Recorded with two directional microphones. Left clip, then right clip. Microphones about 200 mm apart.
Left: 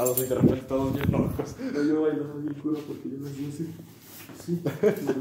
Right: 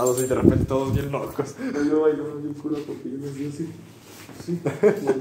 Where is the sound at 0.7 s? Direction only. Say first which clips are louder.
Right 3 dB; 35° right (ahead or behind).